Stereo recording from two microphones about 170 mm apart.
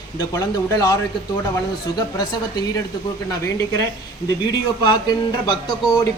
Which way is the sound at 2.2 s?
25° left (ahead or behind).